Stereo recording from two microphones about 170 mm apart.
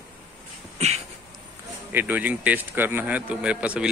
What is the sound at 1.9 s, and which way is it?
Speech, 10° right (ahead or behind).